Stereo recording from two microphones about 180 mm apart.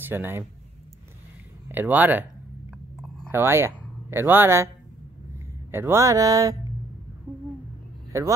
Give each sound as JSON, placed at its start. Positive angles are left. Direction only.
{"t": 0.1, "sound": "speech", "side_deg": -10}
{"t": 1.7, "sound": "speech", "side_deg": -10}
{"t": 3.3, "sound": "speech", "side_deg": -15}
{"t": 5.7, "sound": "speech", "side_deg": -15}
{"t": 8.1, "sound": "speech", "side_deg": -15}